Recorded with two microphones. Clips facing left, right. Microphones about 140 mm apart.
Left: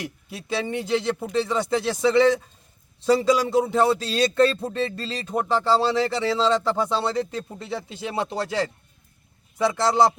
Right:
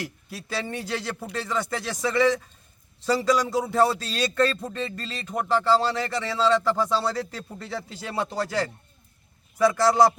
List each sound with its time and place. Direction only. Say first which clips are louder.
0.0 s speech: left 1 dB; 20° left (ahead or behind)